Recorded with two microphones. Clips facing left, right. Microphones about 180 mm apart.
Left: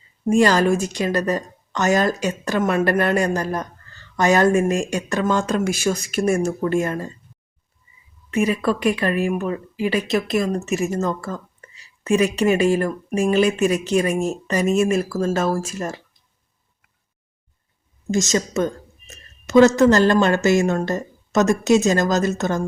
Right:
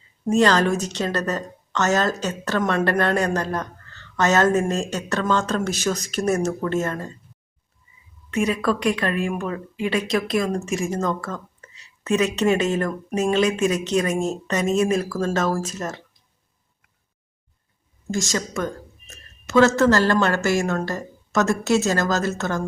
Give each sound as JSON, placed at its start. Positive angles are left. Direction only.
{"t": 0.3, "sound": "a woman's voice", "side_deg": 10}
{"t": 8.3, "sound": "a woman's voice", "side_deg": 5}
{"t": 18.1, "sound": "a woman's voice", "side_deg": 20}